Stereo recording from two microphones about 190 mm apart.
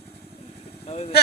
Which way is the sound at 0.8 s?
35° left (ahead or behind).